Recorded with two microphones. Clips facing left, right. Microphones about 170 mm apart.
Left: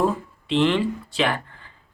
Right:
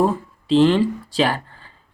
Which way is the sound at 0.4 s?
35° right (ahead or behind).